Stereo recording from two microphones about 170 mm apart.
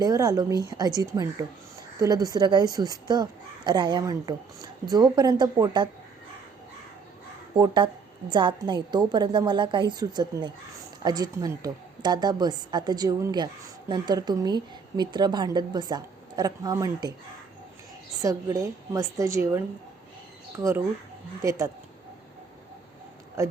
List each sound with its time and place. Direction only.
0.0 s a woman's voice: 20° right (ahead or behind)
7.5 s a woman's voice: 25° right (ahead or behind)
18.2 s a woman's voice: 20° right (ahead or behind)